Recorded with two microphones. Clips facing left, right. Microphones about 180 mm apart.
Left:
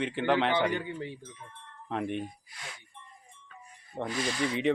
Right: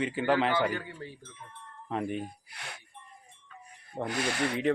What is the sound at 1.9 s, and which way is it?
Speech, centre (ahead or behind).